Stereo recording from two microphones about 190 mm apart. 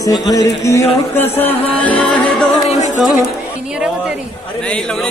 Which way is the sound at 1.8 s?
5° left (ahead or behind).